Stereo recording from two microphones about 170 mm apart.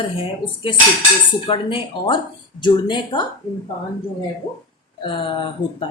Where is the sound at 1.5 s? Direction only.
30° left (ahead or behind).